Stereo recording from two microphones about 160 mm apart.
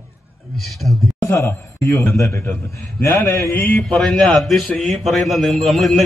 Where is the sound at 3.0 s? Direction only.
15° left (ahead or behind).